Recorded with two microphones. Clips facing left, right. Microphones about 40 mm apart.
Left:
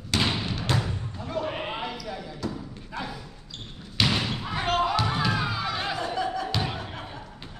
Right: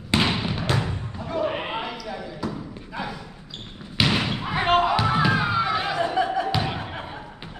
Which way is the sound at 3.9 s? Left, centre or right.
Right.